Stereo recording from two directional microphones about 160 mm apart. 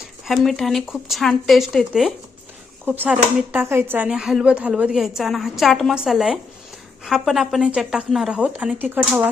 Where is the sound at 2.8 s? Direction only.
10° right (ahead or behind).